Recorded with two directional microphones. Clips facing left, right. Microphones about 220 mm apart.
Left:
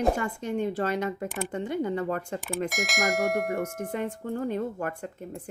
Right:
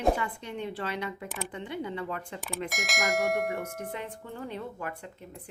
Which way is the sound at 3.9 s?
45° left (ahead or behind).